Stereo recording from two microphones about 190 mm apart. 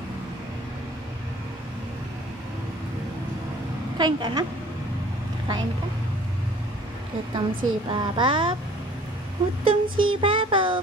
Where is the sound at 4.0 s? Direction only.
20° right (ahead or behind).